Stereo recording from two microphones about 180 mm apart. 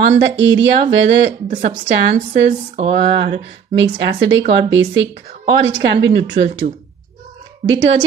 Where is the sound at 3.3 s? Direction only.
80° right.